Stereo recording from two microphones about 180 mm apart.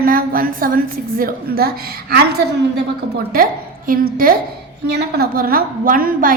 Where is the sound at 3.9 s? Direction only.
55° right (ahead or behind).